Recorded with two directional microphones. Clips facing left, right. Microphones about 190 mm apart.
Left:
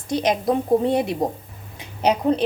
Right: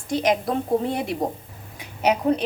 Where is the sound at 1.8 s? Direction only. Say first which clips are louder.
Left 1 dB; 30° left (ahead or behind).